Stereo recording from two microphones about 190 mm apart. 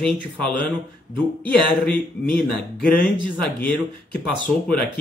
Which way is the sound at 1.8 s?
5° left (ahead or behind).